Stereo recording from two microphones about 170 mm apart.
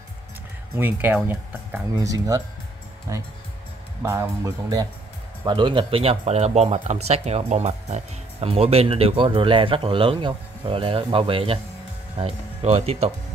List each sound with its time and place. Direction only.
0.7 s speech: 10° right (ahead or behind)
4.0 s speech: 15° right (ahead or behind); by 13.1 s 35° right (ahead or behind)